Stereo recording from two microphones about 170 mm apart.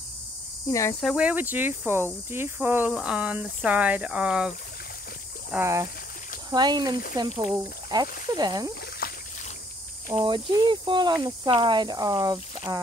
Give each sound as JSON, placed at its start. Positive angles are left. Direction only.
{"t": 0.7, "sound": "cricket", "side_deg": 20}
{"t": 1.0, "sound": "speech", "side_deg": -5}
{"t": 5.5, "sound": "speech", "side_deg": -15}
{"t": 9.0, "sound": "boat", "side_deg": 60}
{"t": 10.1, "sound": "speech", "side_deg": -25}